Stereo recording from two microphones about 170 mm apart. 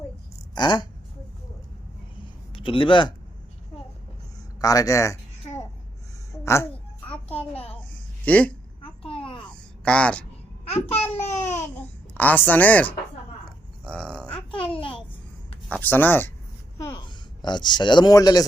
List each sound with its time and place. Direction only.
0.5 s speech: 25° left (ahead or behind)
2.5 s a man's voice: 30° left (ahead or behind)
4.6 s speech: 20° left (ahead or behind)
6.4 s speech: 15° left (ahead or behind)
7.7 s a sound: 10° left (ahead or behind)
8.8 s a sound: 30° left (ahead or behind)
9.5 s a sound: 5° left (ahead or behind)
10.7 s speech: 40° left (ahead or behind)
12.1 s a woman's voice: 10° left (ahead or behind)
13.8 s a sound: 5° left (ahead or behind)
14.3 s babbling: 30° left (ahead or behind)
15.7 s a woman's voice: 10° left (ahead or behind)
16.7 s speech: 25° left (ahead or behind)